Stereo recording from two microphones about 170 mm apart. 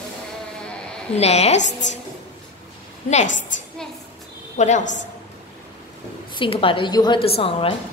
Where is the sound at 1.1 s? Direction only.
40° left (ahead or behind).